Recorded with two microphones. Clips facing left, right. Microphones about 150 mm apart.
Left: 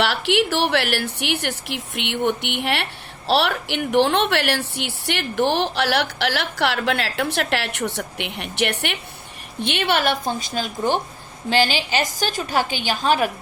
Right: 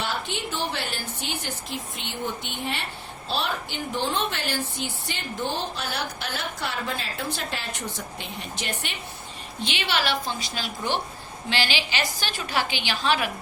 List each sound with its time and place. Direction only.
0.0 s speech: 75° left (ahead or behind)
9.6 s a woman's voice: 60° left (ahead or behind)